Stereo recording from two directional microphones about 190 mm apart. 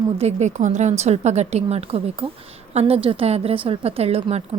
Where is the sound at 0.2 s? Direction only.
35° right (ahead or behind).